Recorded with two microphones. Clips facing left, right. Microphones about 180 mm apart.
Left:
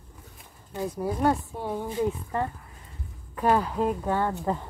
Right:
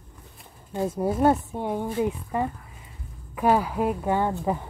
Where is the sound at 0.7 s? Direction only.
25° right (ahead or behind).